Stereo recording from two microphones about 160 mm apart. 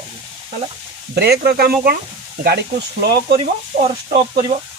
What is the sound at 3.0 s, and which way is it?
Speech, 80° right.